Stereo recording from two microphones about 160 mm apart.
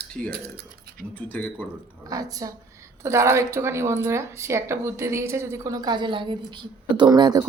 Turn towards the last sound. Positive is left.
turn(degrees=-25)  # may be behind; listen again after turning